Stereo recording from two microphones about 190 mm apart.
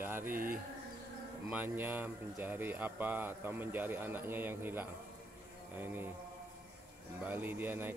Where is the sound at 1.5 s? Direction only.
10° right (ahead or behind).